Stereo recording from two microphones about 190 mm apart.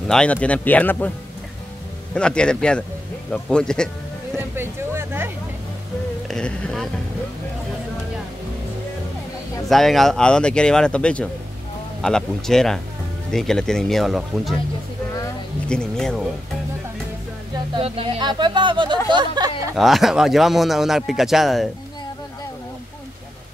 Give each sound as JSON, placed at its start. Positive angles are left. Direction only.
{"t": 0.1, "sound": "speech", "side_deg": 5}
{"t": 2.1, "sound": "speech", "side_deg": 5}
{"t": 4.6, "sound": "a sound", "side_deg": -10}
{"t": 6.2, "sound": "speech", "side_deg": 5}
{"t": 9.7, "sound": "speech", "side_deg": 0}
{"t": 15.7, "sound": "speech", "side_deg": 5}
{"t": 17.7, "sound": "speech", "side_deg": -30}
{"t": 19.0, "sound": "a sound", "side_deg": -25}
{"t": 19.7, "sound": "speech", "side_deg": 0}